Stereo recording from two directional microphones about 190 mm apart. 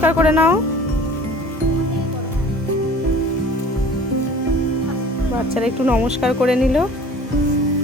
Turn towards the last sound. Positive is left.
turn(degrees=-5)  # may be behind; listen again after turning